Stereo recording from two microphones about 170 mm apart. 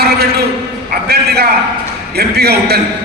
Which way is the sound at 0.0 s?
65° right (ahead or behind).